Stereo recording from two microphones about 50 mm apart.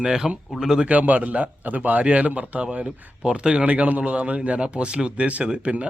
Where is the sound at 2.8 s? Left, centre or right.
Centre.